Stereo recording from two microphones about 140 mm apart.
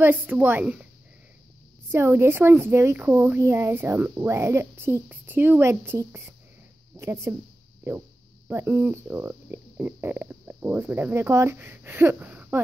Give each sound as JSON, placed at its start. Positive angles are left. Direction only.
{"t": 0.0, "sound": "a woman's voice", "side_deg": -15}
{"t": 1.9, "sound": "a woman's voice", "side_deg": -20}